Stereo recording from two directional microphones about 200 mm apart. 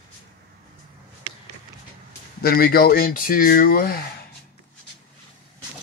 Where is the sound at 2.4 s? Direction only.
50° left (ahead or behind).